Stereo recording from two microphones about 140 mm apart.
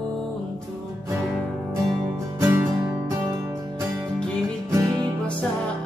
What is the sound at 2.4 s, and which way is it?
Music, 15° right (ahead or behind).